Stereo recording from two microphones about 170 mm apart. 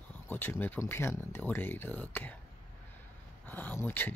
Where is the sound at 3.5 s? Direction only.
10° left (ahead or behind).